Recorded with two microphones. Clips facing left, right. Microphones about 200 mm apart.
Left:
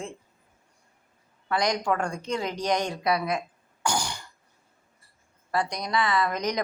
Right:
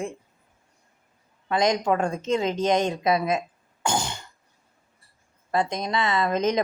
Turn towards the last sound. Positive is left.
turn(degrees=-25)  # may be behind; listen again after turning